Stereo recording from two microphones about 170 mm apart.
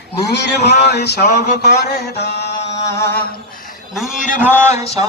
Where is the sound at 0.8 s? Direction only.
75° left (ahead or behind); by 1.7 s 55° left (ahead or behind).